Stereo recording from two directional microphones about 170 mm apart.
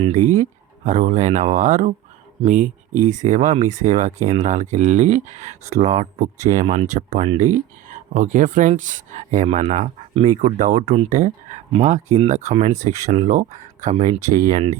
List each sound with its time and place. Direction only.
0.0 s speech: 45° right (ahead or behind)